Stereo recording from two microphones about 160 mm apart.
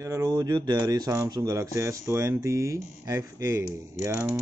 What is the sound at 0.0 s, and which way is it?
Speech, 20° right (ahead or behind).